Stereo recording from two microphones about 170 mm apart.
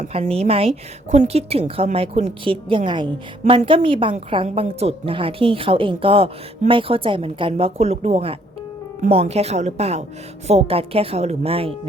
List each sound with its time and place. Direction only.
0.0 s a woman's voice: 35° right (ahead or behind)